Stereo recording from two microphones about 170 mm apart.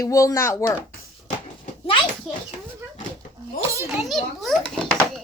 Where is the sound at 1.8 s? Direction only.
30° left (ahead or behind).